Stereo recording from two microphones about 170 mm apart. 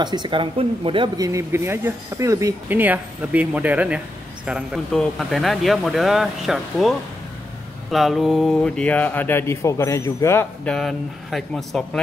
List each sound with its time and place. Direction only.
0.0 s speech: 25° right (ahead or behind); by 12.0 s centre (ahead or behind)